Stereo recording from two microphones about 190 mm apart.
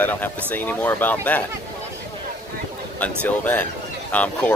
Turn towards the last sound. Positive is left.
turn(degrees=10)  # may be behind; listen again after turning